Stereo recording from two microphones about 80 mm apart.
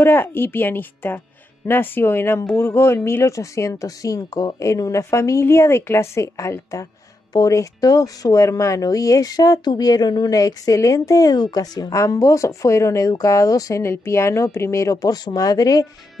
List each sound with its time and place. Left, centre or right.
0.0 s a woman's voice: left